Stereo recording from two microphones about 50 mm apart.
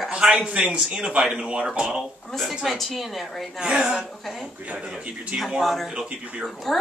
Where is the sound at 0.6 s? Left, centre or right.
Centre.